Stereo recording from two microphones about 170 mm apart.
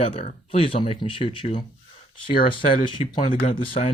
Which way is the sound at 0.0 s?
35° left (ahead or behind).